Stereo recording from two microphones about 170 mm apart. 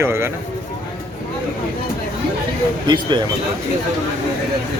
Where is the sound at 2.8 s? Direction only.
25° right (ahead or behind).